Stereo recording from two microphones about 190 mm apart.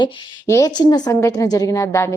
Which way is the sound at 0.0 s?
15° left (ahead or behind).